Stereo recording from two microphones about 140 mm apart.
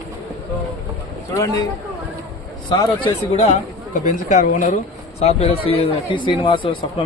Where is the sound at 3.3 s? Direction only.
60° left (ahead or behind).